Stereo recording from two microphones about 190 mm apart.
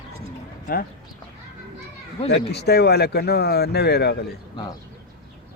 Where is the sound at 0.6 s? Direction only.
50° left (ahead or behind).